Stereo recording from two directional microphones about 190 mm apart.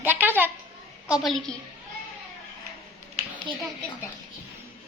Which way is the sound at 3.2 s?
35° right (ahead or behind).